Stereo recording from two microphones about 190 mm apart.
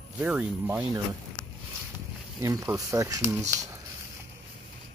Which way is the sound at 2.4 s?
15° right (ahead or behind).